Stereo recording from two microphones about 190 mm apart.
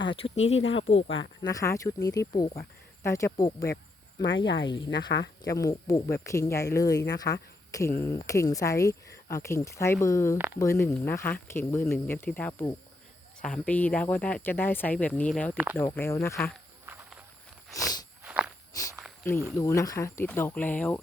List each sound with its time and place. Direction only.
0.2 s speech: 30° left (ahead or behind)
0.6 s speech: 80° left
1.4 s speech: 20° left (ahead or behind)
4.4 s speech: 70° left (ahead or behind)
5.5 s speech: 15° left (ahead or behind)
10.3 s speech: 10° right (ahead or behind)
10.6 s speech: 15° left (ahead or behind)
15.5 s speech: 10° right (ahead or behind)
15.8 s speech: 15° left (ahead or behind)
16.8 s run: 10° right (ahead or behind)
17.7 s a sound: 20° left (ahead or behind)
18.2 s walk: 5° right (ahead or behind)
19.2 s speech: 10° left (ahead or behind)